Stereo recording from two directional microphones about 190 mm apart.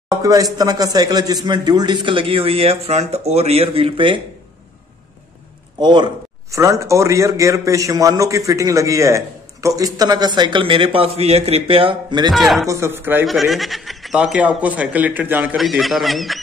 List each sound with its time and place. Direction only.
0.1 s a sound: 20° right (ahead or behind)
0.6 s a man's voice: 20° right (ahead or behind)
5.8 s a man's voice: 25° right (ahead or behind)
12.3 s speech: centre (ahead or behind)
12.6 s a man's voice: 15° right (ahead or behind)
13.3 s speech: centre (ahead or behind)